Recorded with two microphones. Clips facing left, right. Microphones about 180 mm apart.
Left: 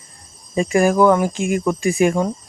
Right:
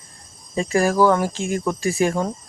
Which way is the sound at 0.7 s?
20° left (ahead or behind).